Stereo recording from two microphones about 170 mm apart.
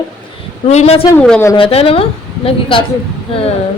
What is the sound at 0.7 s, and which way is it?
Speech, 40° left (ahead or behind).